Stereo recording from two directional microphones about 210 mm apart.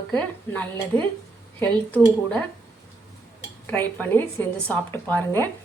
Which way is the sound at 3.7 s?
10° left (ahead or behind).